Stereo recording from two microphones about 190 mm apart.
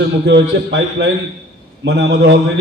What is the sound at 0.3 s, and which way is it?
A man's voice, 70° right (ahead or behind).